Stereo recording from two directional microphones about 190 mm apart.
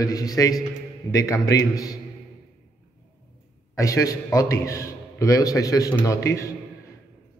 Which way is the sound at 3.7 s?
15° left (ahead or behind).